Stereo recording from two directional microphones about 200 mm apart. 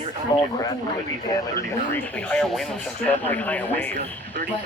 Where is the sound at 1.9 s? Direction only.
5° left (ahead or behind).